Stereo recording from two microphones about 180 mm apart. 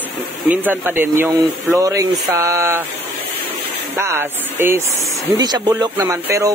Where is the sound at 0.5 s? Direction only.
10° right (ahead or behind).